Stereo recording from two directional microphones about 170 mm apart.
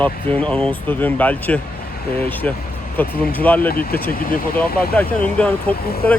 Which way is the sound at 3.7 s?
60° left (ahead or behind).